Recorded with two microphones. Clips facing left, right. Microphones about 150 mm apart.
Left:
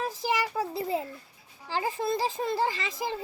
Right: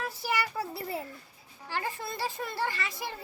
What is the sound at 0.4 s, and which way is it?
A child's voice, 15° left (ahead or behind).